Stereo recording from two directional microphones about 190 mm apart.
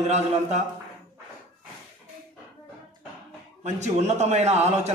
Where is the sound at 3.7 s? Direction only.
35° right (ahead or behind).